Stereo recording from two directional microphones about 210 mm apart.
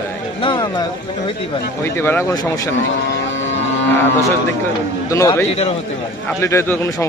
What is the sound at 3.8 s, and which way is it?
Speech, 10° left (ahead or behind).